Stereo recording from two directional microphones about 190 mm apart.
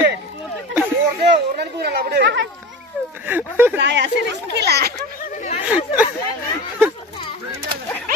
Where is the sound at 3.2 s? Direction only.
10° right (ahead or behind).